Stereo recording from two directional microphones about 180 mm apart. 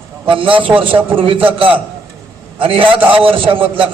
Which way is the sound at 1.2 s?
30° right (ahead or behind).